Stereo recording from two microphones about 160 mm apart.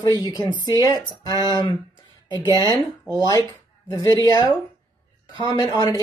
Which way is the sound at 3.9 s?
20° left (ahead or behind).